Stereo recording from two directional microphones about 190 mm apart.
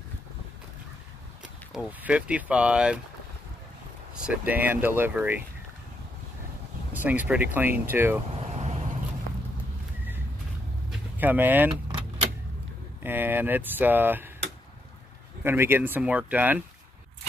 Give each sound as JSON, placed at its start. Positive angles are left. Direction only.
{"t": 1.4, "sound": "speech", "side_deg": -5}
{"t": 4.3, "sound": "speech", "side_deg": -10}
{"t": 6.9, "sound": "speech", "side_deg": -10}
{"t": 8.4, "sound": "vehicle", "side_deg": -35}
{"t": 10.9, "sound": "vehicle", "side_deg": -10}
{"t": 13.0, "sound": "speech", "side_deg": -10}
{"t": 15.4, "sound": "speech", "side_deg": -10}